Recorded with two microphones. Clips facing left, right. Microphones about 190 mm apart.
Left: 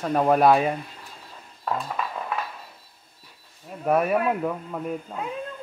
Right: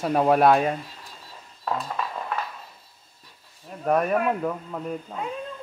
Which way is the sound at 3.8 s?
5° left (ahead or behind).